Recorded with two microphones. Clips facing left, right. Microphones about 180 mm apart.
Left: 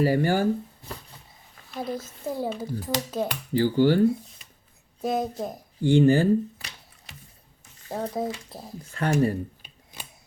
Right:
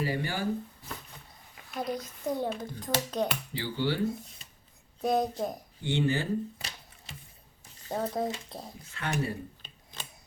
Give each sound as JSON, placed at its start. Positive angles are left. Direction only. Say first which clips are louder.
{"t": 0.0, "sound": "speech", "louder": "left 10 dB", "side_deg": 45}
{"t": 1.7, "sound": "a child's voice", "louder": "left 2 dB", "side_deg": 5}
{"t": 3.5, "sound": "speech", "louder": "left 11 dB", "side_deg": 45}
{"t": 4.9, "sound": "a child's voice", "louder": "left 1 dB", "side_deg": 0}
{"t": 5.8, "sound": "speech", "louder": "left 10 dB", "side_deg": 45}
{"t": 7.9, "sound": "a child's voice", "louder": "left 2 dB", "side_deg": 0}
{"t": 8.8, "sound": "speech", "louder": "left 10 dB", "side_deg": 40}
{"t": 9.6, "sound": "scissors", "louder": "left 1 dB", "side_deg": 10}